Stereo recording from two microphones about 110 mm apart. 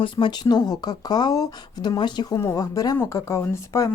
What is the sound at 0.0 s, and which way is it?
Speech, 45° left (ahead or behind).